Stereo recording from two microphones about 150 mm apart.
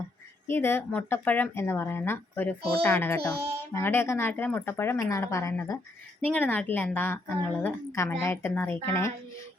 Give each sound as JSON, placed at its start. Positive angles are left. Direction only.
{"t": 0.4, "sound": "speech", "side_deg": 15}